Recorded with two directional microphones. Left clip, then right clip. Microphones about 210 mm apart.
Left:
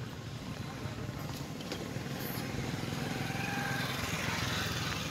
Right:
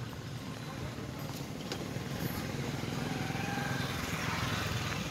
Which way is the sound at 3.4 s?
25° left (ahead or behind).